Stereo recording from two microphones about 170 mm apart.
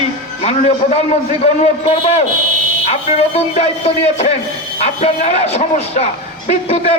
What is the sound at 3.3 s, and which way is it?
A man's voice, 40° left (ahead or behind).